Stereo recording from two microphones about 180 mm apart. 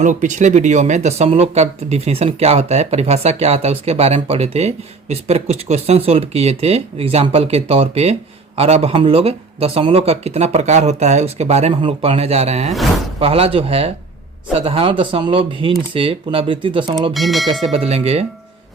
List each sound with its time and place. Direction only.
0.0 s speech: 45° right (ahead or behind)
17.2 s speech: centre (ahead or behind)
17.7 s speech: 35° right (ahead or behind)